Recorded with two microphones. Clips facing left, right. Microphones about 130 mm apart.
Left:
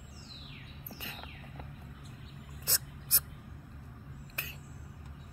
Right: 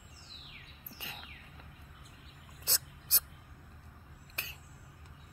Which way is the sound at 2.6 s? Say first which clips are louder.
Left 1 dB; 25° right (ahead or behind).